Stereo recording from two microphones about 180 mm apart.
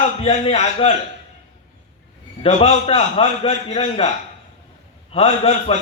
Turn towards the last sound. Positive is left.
turn(degrees=35)  # may be behind; listen again after turning